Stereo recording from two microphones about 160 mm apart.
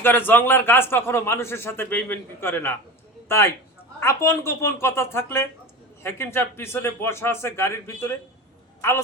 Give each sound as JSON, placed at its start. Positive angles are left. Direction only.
{"t": 0.0, "sound": "a man's voice", "side_deg": 15}